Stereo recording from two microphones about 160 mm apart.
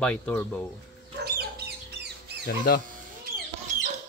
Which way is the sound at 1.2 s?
80° right.